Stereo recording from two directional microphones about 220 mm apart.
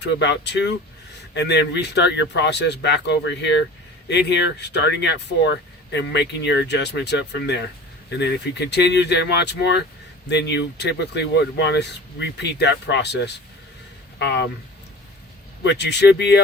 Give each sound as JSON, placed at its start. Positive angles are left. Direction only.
{"t": 0.0, "sound": "speech", "side_deg": 50}
{"t": 15.6, "sound": "speech", "side_deg": 50}